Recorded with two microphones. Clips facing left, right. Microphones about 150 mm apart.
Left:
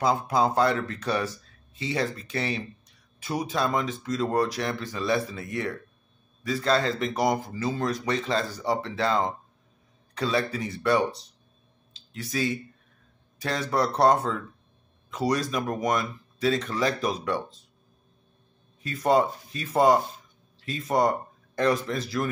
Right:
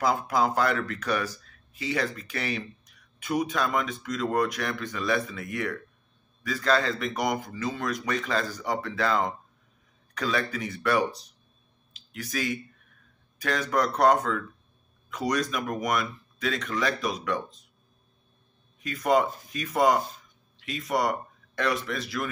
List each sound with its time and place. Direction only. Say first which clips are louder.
0.0 s speech: left 1 dB; 25° left (ahead or behind)
11.9 s a sound: left 1 dB; 25° left (ahead or behind)
13.4 s speech: even; 30° left (ahead or behind)
18.8 s speech: left 1 dB; 30° left (ahead or behind)